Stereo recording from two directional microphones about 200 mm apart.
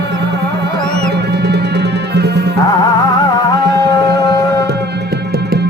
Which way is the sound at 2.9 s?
20° left (ahead or behind).